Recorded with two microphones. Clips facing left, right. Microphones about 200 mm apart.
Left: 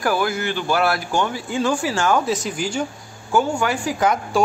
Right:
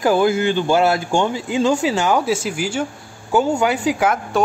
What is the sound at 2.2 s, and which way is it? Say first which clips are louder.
Speech: right 2 dB; 5° right (ahead or behind).